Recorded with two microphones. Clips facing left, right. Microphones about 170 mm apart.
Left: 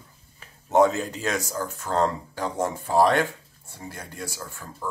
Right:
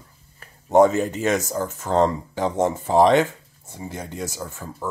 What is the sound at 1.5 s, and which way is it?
Speech, 15° right (ahead or behind).